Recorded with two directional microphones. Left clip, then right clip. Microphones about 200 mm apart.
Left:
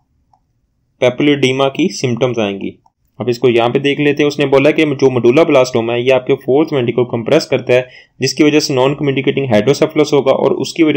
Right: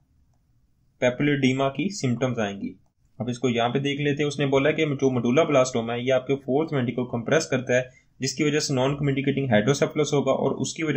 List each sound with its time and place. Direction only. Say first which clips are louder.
0.9 s speech: left 11 dB; 25° left (ahead or behind)